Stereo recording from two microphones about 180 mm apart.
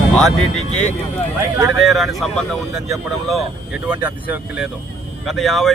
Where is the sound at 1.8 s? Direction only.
Centre (ahead or behind).